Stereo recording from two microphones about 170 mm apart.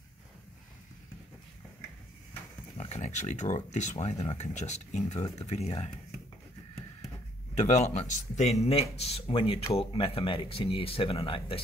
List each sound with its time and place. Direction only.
2.8 s speech: 40° left (ahead or behind)
7.5 s speech: 40° left (ahead or behind)